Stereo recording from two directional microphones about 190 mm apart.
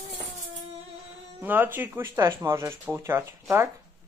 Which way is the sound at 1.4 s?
10° right (ahead or behind).